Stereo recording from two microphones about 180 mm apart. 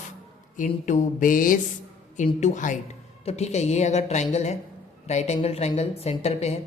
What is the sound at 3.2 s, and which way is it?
Speech, 35° left (ahead or behind).